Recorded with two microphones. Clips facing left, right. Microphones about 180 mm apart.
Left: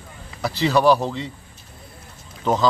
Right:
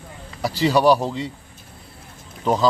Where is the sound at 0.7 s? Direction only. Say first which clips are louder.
Even; 10° right (ahead or behind).